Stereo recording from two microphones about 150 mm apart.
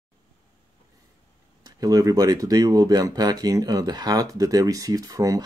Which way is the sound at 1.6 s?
25° right (ahead or behind).